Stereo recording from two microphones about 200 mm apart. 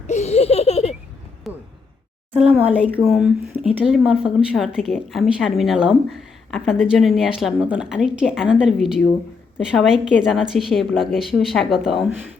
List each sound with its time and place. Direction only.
0.1 s laughter: 35° left (ahead or behind)
1.5 s a sound: centre (ahead or behind)
2.3 s a woman's voice: 5° right (ahead or behind)